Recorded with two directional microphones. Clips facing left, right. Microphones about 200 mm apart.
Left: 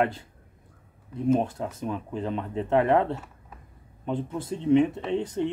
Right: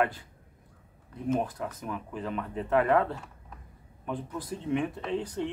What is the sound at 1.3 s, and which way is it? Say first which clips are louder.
Speech: left 5 dB; 25° left (ahead or behind).